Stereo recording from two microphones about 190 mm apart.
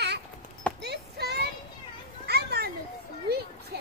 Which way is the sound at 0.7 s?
60° right (ahead or behind).